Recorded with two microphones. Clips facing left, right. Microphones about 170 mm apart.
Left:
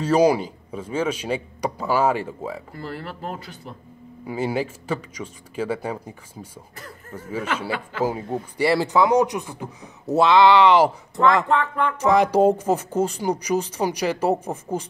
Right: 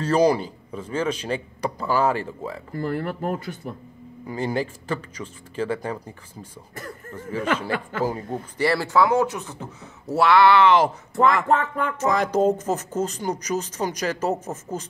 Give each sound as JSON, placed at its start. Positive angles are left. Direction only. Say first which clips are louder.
{"t": 0.0, "sound": "speech", "louder": "left 1 dB", "side_deg": 10}
{"t": 2.7, "sound": "speech", "louder": "right 6 dB", "side_deg": -50}
{"t": 4.3, "sound": "speech", "louder": "left 1 dB", "side_deg": 5}
{"t": 11.4, "sound": "speech", "louder": "even", "side_deg": -45}
{"t": 12.0, "sound": "speech", "louder": "left 4 dB", "side_deg": 10}